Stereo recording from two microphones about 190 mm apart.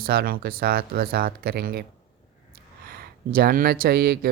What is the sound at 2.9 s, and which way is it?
Speech, 50° right (ahead or behind).